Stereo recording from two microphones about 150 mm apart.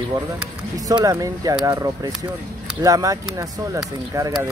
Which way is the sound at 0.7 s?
25° right (ahead or behind).